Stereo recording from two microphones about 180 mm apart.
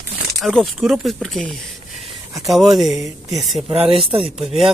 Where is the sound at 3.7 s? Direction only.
30° right (ahead or behind).